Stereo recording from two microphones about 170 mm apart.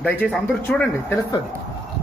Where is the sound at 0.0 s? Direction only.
10° left (ahead or behind).